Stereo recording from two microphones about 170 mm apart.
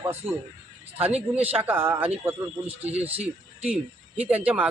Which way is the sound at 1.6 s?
15° right (ahead or behind).